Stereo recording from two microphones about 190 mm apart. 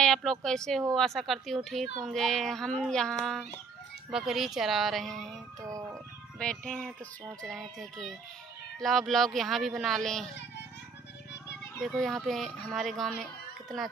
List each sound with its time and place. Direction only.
0.0 s speech: 5° left (ahead or behind)
5.7 s speech: 15° right (ahead or behind)
6.4 s speech: 5° left (ahead or behind)
11.8 s speech: centre (ahead or behind)